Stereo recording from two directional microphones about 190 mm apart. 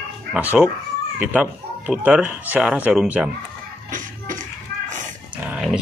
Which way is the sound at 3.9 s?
45° right (ahead or behind).